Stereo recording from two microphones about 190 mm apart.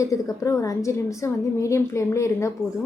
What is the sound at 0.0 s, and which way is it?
Speech, 15° left (ahead or behind).